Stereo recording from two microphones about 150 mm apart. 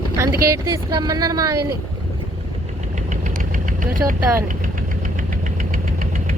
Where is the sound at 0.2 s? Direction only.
20° right (ahead or behind).